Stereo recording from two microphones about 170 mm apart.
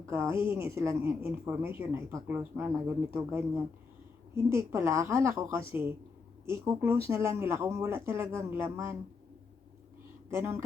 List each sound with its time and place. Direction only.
0.1 s speech: 15° right (ahead or behind)
10.2 s speech: 15° right (ahead or behind)